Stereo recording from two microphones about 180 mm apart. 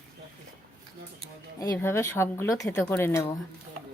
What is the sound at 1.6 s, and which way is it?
Speech, 15° left (ahead or behind).